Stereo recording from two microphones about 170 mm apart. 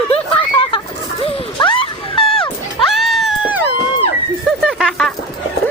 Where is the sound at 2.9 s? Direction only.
Centre (ahead or behind).